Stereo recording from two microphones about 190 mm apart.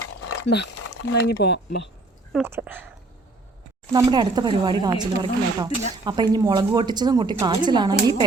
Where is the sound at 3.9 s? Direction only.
20° right (ahead or behind).